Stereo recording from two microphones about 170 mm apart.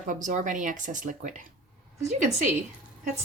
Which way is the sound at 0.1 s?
50° right (ahead or behind).